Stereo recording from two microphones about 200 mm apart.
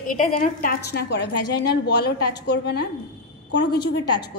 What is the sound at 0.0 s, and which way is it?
A woman's voice, 40° left (ahead or behind).